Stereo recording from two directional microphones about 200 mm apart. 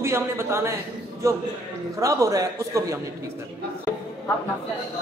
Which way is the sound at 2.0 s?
15° right (ahead or behind).